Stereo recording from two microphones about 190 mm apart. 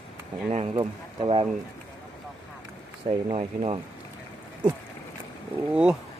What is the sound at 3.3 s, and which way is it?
Speech, 35° right (ahead or behind).